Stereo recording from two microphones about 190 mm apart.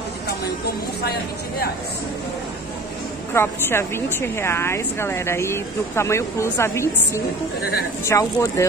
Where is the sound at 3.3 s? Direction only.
10° left (ahead or behind).